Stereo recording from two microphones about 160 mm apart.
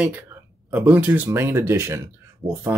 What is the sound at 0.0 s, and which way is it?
Speech, 10° right (ahead or behind).